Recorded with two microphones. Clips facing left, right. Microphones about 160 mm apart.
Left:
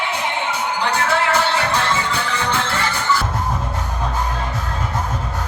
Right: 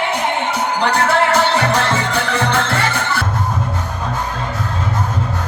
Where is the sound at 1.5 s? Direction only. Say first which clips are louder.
Right 3 dB; 40° right (ahead or behind).